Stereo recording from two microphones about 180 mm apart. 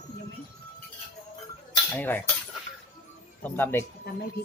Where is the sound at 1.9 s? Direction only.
10° left (ahead or behind).